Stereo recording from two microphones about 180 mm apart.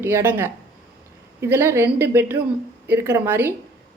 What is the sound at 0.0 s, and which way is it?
A woman's voice, 10° right (ahead or behind).